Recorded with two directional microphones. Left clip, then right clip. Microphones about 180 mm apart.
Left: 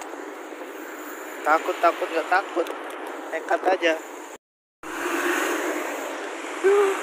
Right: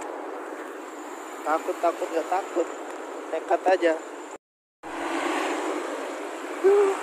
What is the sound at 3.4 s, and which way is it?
Speech, 45° right (ahead or behind).